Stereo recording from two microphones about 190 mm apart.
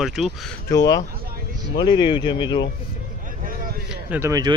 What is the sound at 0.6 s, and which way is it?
Speech, 20° left (ahead or behind).